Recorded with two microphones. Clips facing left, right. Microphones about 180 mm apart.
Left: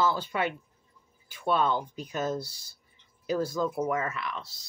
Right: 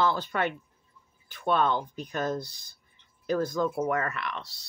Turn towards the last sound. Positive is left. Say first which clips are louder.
# right 1 dB
turn(degrees=5)  # may be behind; listen again after turning